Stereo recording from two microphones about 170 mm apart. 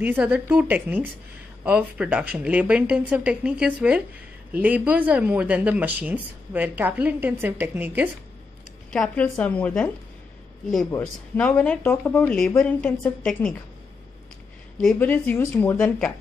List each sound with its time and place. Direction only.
0.1 s a woman's voice: 5° right (ahead or behind)
8.9 s speech: 5° left (ahead or behind)
10.9 s speech: 10° left (ahead or behind)
14.8 s speech: 5° left (ahead or behind)